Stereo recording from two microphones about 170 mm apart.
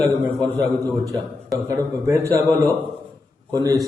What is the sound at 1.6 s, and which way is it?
A man's voice, 20° right (ahead or behind).